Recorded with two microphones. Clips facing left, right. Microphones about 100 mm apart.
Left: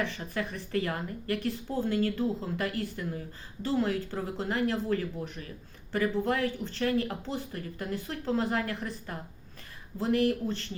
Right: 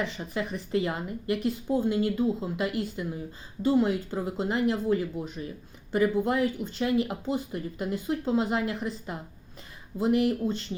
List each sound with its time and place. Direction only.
0.0 s speech: 15° right (ahead or behind)